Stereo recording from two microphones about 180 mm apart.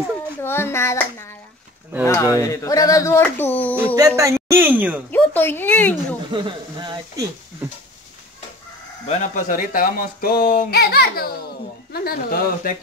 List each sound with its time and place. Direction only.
0.4 s a child's voice: 15° left (ahead or behind)
1.9 s speech: 10° right (ahead or behind)
2.3 s speech: 20° left (ahead or behind)
3.7 s speech: 15° right (ahead or behind)
5.1 s speech: 10° left (ahead or behind)
6.3 s speech: 25° right (ahead or behind)
9.0 s speech: 40° left (ahead or behind); by 12.7 s 55° left (ahead or behind)